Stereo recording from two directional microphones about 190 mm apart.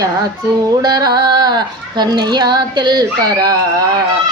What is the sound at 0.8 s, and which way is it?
Speech, 20° right (ahead or behind).